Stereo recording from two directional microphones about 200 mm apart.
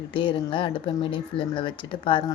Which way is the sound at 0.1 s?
25° left (ahead or behind).